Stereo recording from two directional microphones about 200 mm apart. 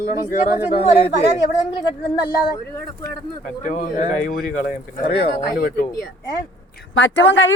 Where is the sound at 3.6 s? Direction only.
40° left (ahead or behind).